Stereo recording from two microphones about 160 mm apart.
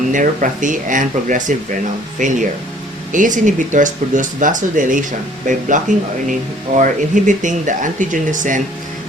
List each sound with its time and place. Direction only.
0.1 s speech: 55° right (ahead or behind)